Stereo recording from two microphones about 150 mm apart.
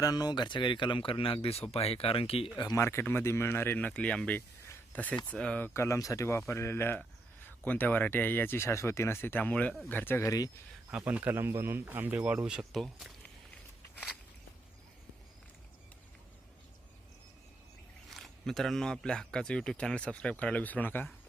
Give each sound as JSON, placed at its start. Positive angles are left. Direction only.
{"t": 0.0, "sound": "speech", "side_deg": 25}
{"t": 2.6, "sound": "speech", "side_deg": 25}
{"t": 10.9, "sound": "speech", "side_deg": -10}
{"t": 18.1, "sound": "speech", "side_deg": 0}